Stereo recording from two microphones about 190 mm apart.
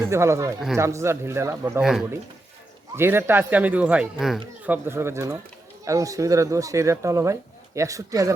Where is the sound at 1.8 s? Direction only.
Centre (ahead or behind).